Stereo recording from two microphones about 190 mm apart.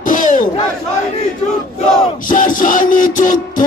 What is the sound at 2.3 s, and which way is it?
Speech, 45° left (ahead or behind).